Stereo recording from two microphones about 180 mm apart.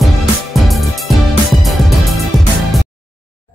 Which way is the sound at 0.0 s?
Centre (ahead or behind).